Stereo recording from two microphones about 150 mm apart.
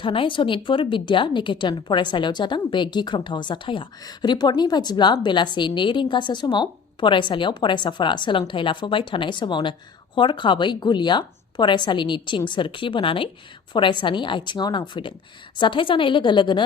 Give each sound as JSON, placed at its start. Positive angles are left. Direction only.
{"t": 0.0, "sound": "a woman's voice", "side_deg": 35}